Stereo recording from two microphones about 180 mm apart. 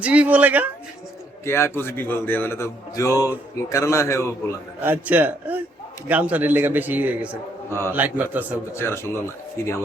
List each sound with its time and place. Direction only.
0.0 s a man's voice: 5° right (ahead or behind)
1.5 s a man's voice: 15° left (ahead or behind)
4.8 s a man's voice: 10° right (ahead or behind)
7.7 s a man's voice: 15° left (ahead or behind)
7.9 s a man's voice: 10° right (ahead or behind)
8.7 s a man's voice: 15° left (ahead or behind)